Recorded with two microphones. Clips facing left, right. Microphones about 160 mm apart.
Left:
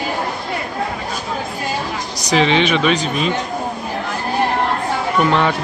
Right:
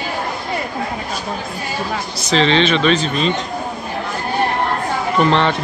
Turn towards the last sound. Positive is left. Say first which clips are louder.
# right 1 dB
turn(degrees=10)  # may be behind; listen again after turning